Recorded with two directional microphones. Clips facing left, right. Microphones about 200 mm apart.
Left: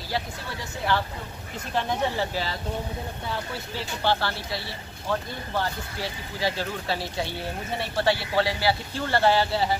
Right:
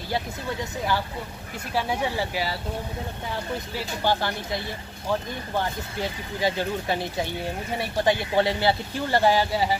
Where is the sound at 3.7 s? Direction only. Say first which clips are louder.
Even; 15° right (ahead or behind).